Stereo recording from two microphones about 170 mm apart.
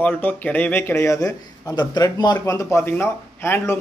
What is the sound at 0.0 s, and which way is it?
Speech, 10° left (ahead or behind).